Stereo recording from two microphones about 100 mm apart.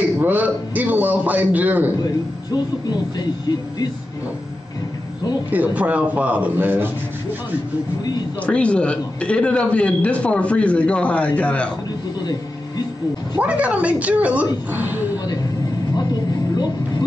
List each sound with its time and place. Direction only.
0.2 s a man's voice: 15° right (ahead or behind)
2.5 s speech: 45° left (ahead or behind)
5.5 s a man's voice: 15° right (ahead or behind)
8.4 s a man's voice: 10° left (ahead or behind)
13.4 s a man's voice: 15° right (ahead or behind)